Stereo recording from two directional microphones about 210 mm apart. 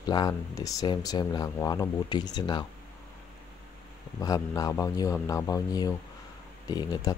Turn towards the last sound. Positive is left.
turn(degrees=20)  # may be behind; listen again after turning